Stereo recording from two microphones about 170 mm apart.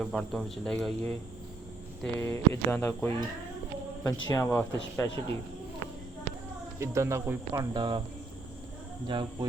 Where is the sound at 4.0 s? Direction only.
20° left (ahead or behind).